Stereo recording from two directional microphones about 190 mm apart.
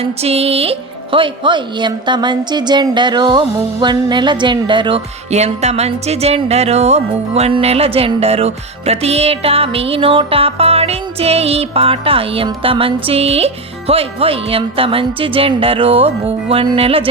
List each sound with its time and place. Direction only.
0.0 s speech: 30° right (ahead or behind)